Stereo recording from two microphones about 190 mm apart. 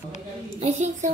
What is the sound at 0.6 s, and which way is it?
Speech, 40° right (ahead or behind).